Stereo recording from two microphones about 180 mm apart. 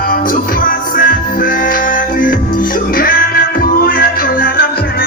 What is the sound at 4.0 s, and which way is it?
Music, 55° left (ahead or behind).